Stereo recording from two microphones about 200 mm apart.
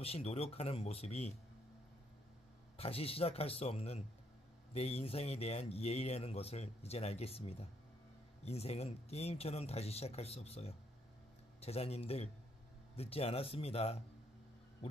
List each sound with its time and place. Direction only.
0.0 s speech: 30° left (ahead or behind)
2.8 s speech: 30° left (ahead or behind)